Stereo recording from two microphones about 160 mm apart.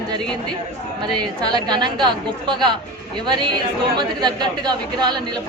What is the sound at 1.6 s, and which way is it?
Speech, 30° right (ahead or behind).